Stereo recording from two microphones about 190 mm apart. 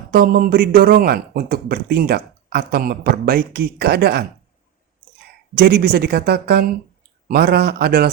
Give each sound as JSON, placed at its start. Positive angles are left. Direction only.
{"t": 0.1, "sound": "speech", "side_deg": -50}
{"t": 5.5, "sound": "speech", "side_deg": -55}